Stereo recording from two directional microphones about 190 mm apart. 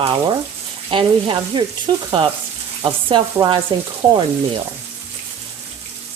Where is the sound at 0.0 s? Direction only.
25° right (ahead or behind).